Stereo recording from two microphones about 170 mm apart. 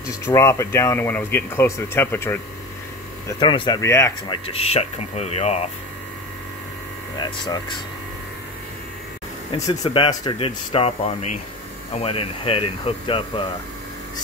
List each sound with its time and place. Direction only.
0.2 s speech: 15° left (ahead or behind)
3.3 s speech: 30° left (ahead or behind)
3.8 s speech: 15° left (ahead or behind)
4.3 s speech: 35° left (ahead or behind)
7.2 s speech: 25° left (ahead or behind)
9.5 s speech: 30° left (ahead or behind)